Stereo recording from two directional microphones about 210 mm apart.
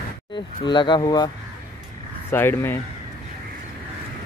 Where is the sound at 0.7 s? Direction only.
20° left (ahead or behind).